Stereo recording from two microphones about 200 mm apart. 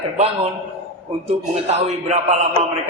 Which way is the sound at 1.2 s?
35° right (ahead or behind).